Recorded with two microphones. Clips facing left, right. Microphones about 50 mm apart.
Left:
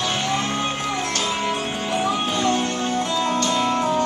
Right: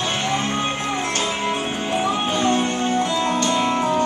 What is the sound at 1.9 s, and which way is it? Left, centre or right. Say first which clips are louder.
Music: right 1 dB; right.